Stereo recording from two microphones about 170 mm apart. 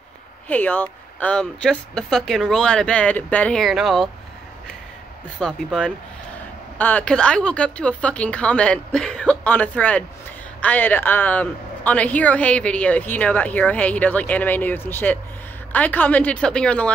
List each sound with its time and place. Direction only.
0.5 s speech: 10° left (ahead or behind)
5.4 s speech: 5° left (ahead or behind)